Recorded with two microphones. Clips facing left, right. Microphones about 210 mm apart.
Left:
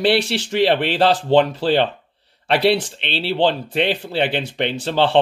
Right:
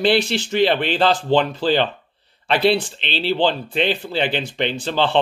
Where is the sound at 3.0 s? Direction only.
65° left (ahead or behind).